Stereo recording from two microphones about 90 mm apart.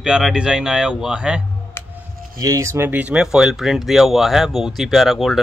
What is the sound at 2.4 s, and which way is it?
Speech, 35° right (ahead or behind).